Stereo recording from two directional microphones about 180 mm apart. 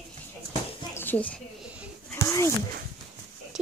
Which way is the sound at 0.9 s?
10° left (ahead or behind).